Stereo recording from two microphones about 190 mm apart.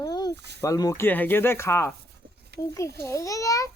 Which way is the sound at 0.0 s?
20° left (ahead or behind).